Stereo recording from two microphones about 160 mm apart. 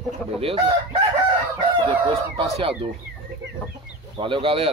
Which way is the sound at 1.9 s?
35° right (ahead or behind).